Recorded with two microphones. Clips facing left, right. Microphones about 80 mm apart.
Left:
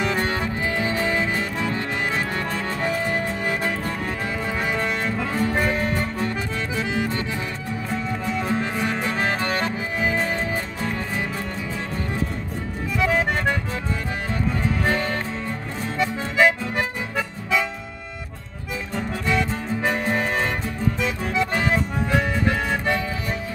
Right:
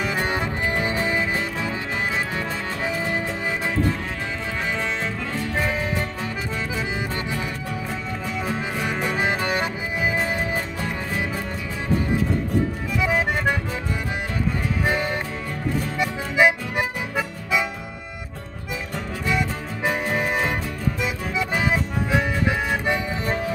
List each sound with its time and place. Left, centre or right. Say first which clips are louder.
0.0 s music: left 2 dB; centre
0.3 s music: even; right
1.0 s music: left 1 dB; centre
2.3 s music: left 1 dB; centre
4.7 s music: left 2 dB; centre
7.9 s music: left 3 dB; centre
13.0 s music: left 1 dB; centre
14.9 s music: right 1 dB; centre
16.0 s accordion: left 1 dB; centre
19.2 s music: left 1 dB; centre
21.0 s accordion: left 3 dB; centre